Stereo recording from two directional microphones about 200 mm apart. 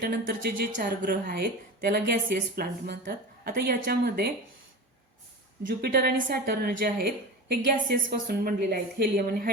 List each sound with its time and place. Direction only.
0.0 s a woman's voice: 45° right (ahead or behind)
5.6 s a woman's voice: 50° right (ahead or behind)